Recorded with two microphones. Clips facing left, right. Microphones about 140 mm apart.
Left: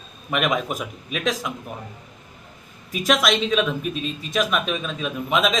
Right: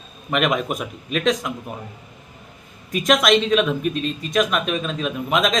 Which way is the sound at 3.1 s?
Centre (ahead or behind).